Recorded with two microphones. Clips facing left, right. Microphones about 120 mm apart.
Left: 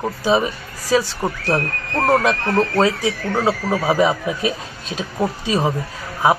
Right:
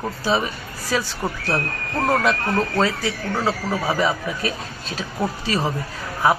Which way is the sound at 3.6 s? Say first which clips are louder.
Left 4 dB; 25° left (ahead or behind).